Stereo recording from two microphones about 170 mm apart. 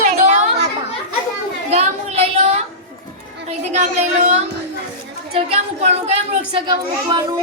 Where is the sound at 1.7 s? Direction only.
35° right (ahead or behind).